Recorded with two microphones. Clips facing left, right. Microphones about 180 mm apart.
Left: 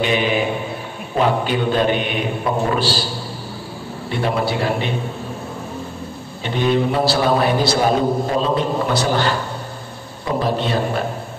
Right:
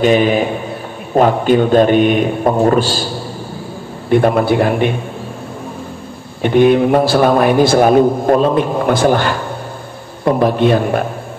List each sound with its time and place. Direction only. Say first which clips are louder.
0.0 s a man's voice: right 7 dB; 45° right (ahead or behind)
4.1 s a man's voice: right 9 dB; 50° right (ahead or behind)
6.4 s a man's voice: right 8 dB; 55° right (ahead or behind)